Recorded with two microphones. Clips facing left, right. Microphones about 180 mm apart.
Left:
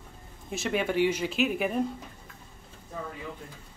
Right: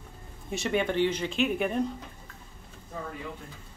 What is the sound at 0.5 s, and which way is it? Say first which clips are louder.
Speech: right 1 dB; centre (ahead or behind).